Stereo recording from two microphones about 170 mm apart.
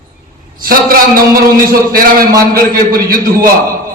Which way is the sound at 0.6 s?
60° right (ahead or behind).